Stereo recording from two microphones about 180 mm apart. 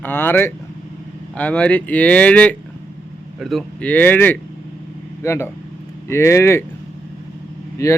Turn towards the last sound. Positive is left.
turn(degrees=15)  # may be behind; listen again after turning